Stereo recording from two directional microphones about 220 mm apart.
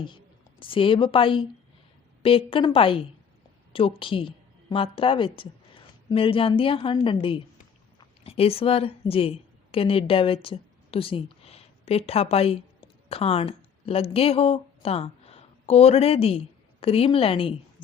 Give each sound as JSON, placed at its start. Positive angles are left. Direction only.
{"t": 0.6, "sound": "a woman's voice", "side_deg": 25}